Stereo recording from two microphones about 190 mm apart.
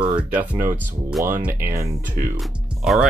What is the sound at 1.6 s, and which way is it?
Speech, 15° right (ahead or behind).